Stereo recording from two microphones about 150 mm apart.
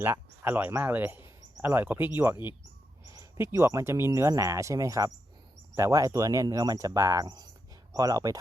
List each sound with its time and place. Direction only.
0.0 s speech: 15° right (ahead or behind)